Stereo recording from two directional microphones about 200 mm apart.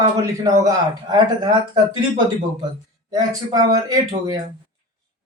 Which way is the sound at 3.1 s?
20° right (ahead or behind).